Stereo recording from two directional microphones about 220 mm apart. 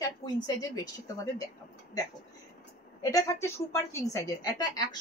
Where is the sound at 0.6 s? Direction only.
15° left (ahead or behind).